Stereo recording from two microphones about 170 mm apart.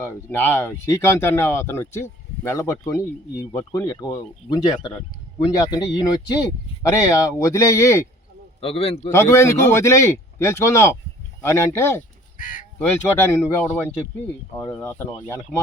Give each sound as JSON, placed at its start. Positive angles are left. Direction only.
{"t": 0.0, "sound": "speech", "side_deg": 15}
{"t": 8.6, "sound": "a man's voice", "side_deg": 35}
{"t": 9.0, "sound": "speech", "side_deg": 15}
{"t": 12.4, "sound": "speech", "side_deg": 50}
{"t": 13.1, "sound": "speech", "side_deg": 15}